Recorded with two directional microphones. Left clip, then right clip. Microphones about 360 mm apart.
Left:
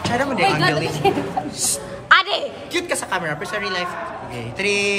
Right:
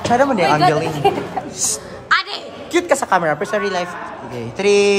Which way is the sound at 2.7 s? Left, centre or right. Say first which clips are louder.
Right 9 dB; centre.